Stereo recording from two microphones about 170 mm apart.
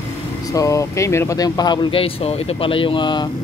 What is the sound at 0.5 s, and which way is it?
Speech, 20° left (ahead or behind).